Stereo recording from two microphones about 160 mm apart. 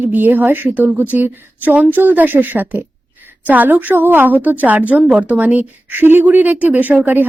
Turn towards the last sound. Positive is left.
turn(degrees=-10)  # may be behind; listen again after turning